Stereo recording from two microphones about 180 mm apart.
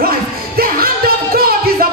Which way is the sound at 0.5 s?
55° right (ahead or behind).